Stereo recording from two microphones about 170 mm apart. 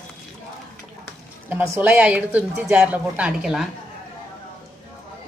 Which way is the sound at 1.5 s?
15° right (ahead or behind).